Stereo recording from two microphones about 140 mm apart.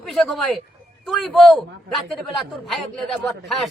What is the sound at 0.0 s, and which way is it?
Speech, centre (ahead or behind).